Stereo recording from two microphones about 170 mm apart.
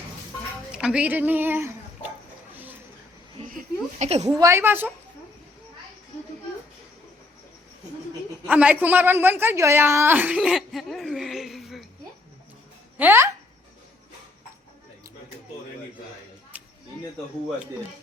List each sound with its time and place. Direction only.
0.7 s speech: 5° right (ahead or behind)
3.5 s speech: 40° right (ahead or behind)
4.4 s a woman's voice: 15° right (ahead or behind)
8.4 s a woman's voice: 5° right (ahead or behind)
13.0 s a woman's voice: 10° right (ahead or behind)
16.5 s a sound: 10° right (ahead or behind)